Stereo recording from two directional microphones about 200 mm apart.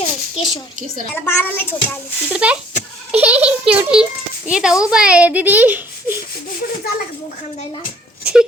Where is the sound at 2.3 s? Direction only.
5° right (ahead or behind).